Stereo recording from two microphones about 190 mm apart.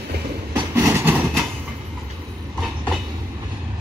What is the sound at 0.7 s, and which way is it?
Vehicle, 15° right (ahead or behind).